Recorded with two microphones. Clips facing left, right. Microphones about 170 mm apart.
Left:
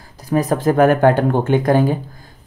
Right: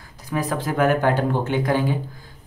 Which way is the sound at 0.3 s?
40° left (ahead or behind).